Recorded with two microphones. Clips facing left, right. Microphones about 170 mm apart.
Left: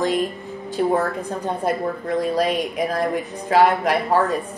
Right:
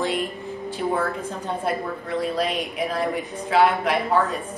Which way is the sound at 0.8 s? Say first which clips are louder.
Left 6 dB; 55° left (ahead or behind).